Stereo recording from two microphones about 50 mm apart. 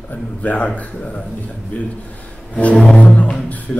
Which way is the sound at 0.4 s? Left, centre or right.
Left.